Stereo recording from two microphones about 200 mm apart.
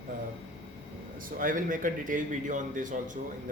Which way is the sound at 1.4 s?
40° right (ahead or behind).